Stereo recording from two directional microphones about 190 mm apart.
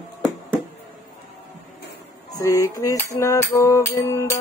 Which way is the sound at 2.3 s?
15° left (ahead or behind).